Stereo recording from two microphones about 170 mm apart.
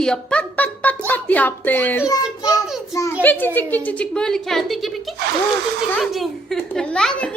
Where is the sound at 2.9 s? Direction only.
20° left (ahead or behind).